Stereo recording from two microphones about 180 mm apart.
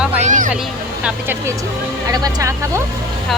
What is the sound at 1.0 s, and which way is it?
Speech, 10° right (ahead or behind).